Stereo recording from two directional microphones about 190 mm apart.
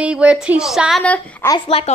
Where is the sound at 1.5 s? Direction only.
30° left (ahead or behind).